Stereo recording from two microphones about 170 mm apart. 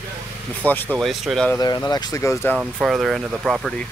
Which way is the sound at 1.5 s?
20° left (ahead or behind).